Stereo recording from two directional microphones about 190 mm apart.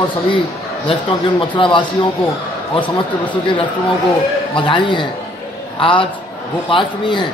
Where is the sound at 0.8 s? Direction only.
25° left (ahead or behind).